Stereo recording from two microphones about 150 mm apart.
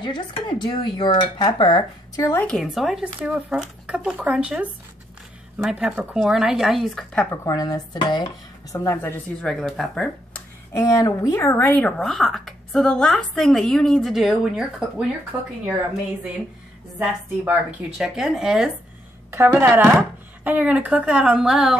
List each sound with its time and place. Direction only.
0.0 s speech: 30° left (ahead or behind)
2.2 s a woman's voice: 10° left (ahead or behind)
7.4 s dishes: 25° left (ahead or behind)
8.7 s a woman's voice: 15° left (ahead or behind)
9.5 s speech: centre (ahead or behind)
10.7 s speech: 20° left (ahead or behind); by 15.0 s 5° right (ahead or behind)
17.5 s speech: 5° right (ahead or behind)
19.3 s a woman's voice: 15° right (ahead or behind)